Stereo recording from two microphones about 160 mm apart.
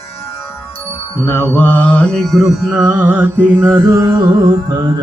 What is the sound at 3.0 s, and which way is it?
Mantra, 10° right (ahead or behind).